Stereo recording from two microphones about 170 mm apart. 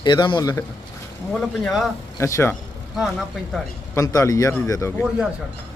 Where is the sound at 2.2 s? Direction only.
15° left (ahead or behind).